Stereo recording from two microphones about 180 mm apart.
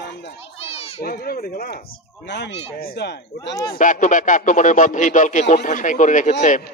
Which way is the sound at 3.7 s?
45° left (ahead or behind).